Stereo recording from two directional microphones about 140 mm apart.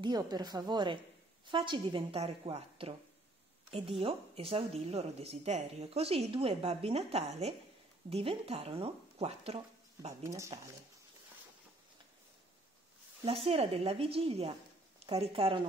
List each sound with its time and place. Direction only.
0.0 s a woman's voice: 30° right (ahead or behind); by 9.6 s 45° right (ahead or behind)
10.2 s a woman's voice: 20° right (ahead or behind)
13.2 s speech: 45° right (ahead or behind)